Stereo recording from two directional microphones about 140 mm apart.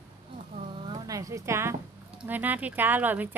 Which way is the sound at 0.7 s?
30° right (ahead or behind).